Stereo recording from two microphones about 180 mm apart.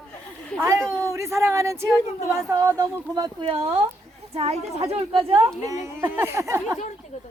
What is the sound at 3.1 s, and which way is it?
Speech, 25° right (ahead or behind).